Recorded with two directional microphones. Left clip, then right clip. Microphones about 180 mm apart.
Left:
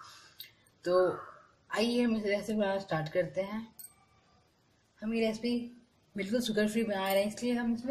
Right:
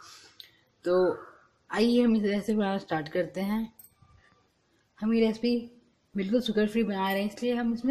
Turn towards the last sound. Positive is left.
turn(degrees=-40)  # may be behind; listen again after turning